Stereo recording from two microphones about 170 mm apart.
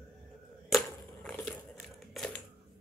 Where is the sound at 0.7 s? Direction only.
Centre (ahead or behind).